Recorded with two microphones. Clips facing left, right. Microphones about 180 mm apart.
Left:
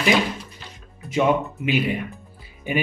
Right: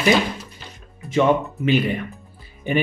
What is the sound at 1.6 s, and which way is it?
Speech, 10° left (ahead or behind).